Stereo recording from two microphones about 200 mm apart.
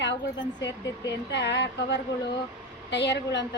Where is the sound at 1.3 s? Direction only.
60° left (ahead or behind).